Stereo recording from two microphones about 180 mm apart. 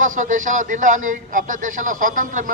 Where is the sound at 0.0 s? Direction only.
45° right (ahead or behind).